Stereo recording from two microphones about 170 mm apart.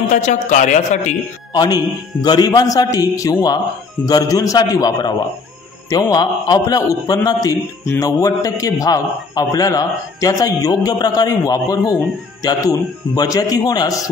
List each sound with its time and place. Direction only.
0.1 s speech: 45° left (ahead or behind)
1.5 s a man's voice: 25° left (ahead or behind)